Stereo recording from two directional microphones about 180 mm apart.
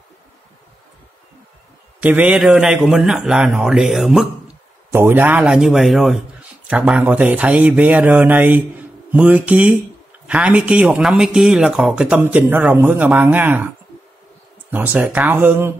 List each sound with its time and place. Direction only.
2.0 s a man's voice: 10° right (ahead or behind)
14.7 s speech: 10° right (ahead or behind)